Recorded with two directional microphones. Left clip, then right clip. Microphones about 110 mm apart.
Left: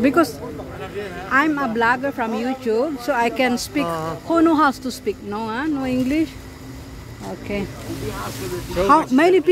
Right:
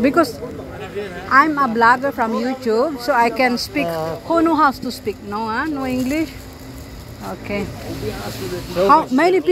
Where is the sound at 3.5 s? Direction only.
55° left (ahead or behind).